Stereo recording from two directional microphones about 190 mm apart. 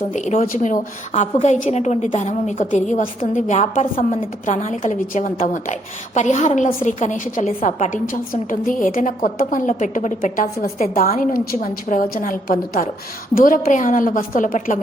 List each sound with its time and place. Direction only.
0.1 s a woman's voice: 40° left (ahead or behind)